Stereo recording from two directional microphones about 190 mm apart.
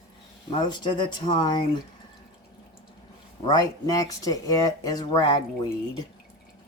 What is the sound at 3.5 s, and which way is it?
Speech, 20° left (ahead or behind).